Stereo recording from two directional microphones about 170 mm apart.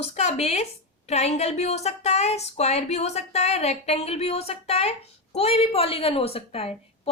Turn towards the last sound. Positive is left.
turn(degrees=35)  # may be behind; listen again after turning